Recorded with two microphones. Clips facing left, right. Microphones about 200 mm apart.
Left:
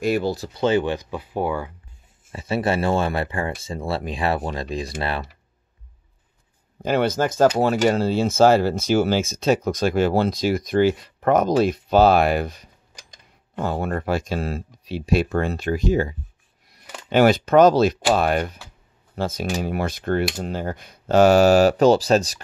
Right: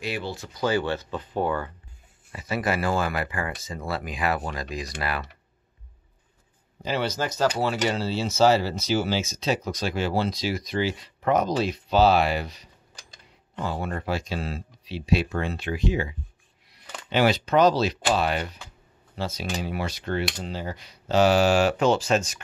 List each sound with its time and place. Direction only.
0.0 s speech: 45° left (ahead or behind); by 1.7 s 10° left (ahead or behind)
2.3 s speech: 30° left (ahead or behind)
6.8 s speech: 50° left (ahead or behind); by 22.4 s 35° left (ahead or behind)